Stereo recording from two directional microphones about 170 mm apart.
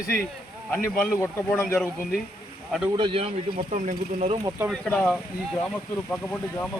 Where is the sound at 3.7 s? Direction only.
40° right (ahead or behind).